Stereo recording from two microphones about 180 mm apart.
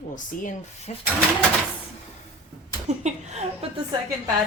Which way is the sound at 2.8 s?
40° right (ahead or behind).